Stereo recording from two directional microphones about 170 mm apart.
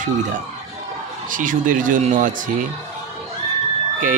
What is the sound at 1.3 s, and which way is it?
Speech, 50° right (ahead or behind).